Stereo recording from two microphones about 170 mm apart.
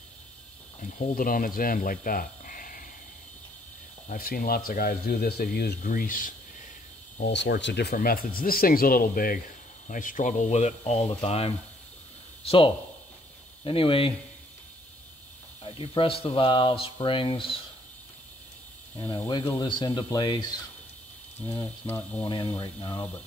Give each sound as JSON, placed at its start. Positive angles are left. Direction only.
{"t": 0.7, "sound": "speech", "side_deg": 55}
{"t": 4.1, "sound": "speech", "side_deg": 60}
{"t": 5.9, "sound": "speech", "side_deg": 55}
{"t": 7.2, "sound": "speech", "side_deg": 85}
{"t": 15.6, "sound": "speech", "side_deg": 30}
{"t": 19.2, "sound": "speech", "side_deg": 25}
{"t": 21.5, "sound": "mechanisms", "side_deg": 15}
{"t": 22.2, "sound": "speech", "side_deg": 30}